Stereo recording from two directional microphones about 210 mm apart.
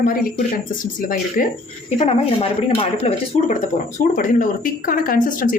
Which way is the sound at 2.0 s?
30° left (ahead or behind).